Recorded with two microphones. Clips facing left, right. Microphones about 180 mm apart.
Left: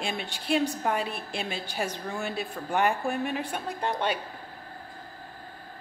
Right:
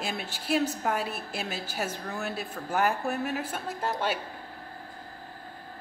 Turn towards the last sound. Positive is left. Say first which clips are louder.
# left 1 dB
turn(degrees=-5)  # may be behind; listen again after turning